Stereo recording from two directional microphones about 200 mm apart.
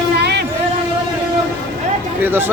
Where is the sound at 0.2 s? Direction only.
55° right (ahead or behind).